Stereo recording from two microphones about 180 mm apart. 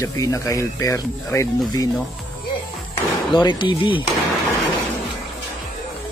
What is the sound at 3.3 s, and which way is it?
Speech, 25° left (ahead or behind).